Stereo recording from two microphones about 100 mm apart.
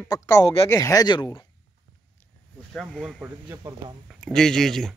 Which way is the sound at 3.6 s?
40° right (ahead or behind).